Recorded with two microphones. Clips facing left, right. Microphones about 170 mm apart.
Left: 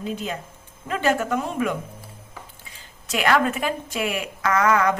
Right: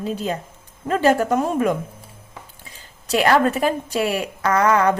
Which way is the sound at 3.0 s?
35° right (ahead or behind).